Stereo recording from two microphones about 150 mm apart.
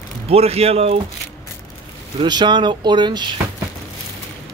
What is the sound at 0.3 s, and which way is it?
Mantra, 45° right (ahead or behind).